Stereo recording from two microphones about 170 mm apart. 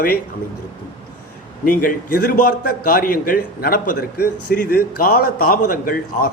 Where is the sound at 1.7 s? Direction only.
55° left (ahead or behind).